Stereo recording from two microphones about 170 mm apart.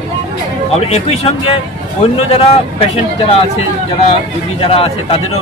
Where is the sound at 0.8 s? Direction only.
35° left (ahead or behind).